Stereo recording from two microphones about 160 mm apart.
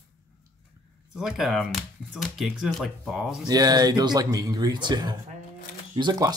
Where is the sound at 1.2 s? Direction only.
Centre (ahead or behind).